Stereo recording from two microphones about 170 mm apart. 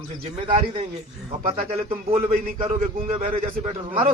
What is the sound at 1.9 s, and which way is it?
Speech, 35° right (ahead or behind).